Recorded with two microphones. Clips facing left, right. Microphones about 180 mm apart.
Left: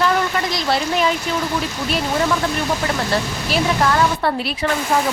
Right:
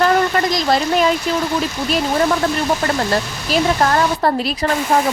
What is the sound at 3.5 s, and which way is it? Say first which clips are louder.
Speech: right 3 dB; 40° right (ahead or behind).